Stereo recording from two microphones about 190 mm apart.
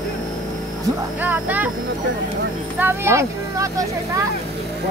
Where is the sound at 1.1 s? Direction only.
10° right (ahead or behind).